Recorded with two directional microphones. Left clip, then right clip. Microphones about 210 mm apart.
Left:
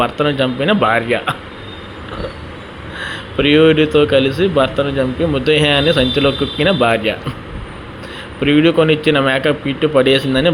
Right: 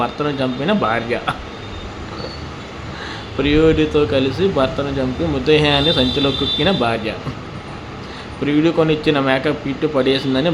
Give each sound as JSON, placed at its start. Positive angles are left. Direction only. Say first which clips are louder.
{"t": 0.0, "sound": "a man's voice", "louder": "left 4 dB", "side_deg": 10}
{"t": 3.0, "sound": "a man's voice", "louder": "left 5 dB", "side_deg": 10}
{"t": 8.4, "sound": "a man's voice", "louder": "left 4 dB", "side_deg": 10}